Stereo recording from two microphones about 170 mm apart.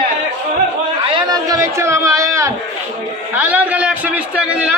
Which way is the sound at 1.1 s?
20° right (ahead or behind).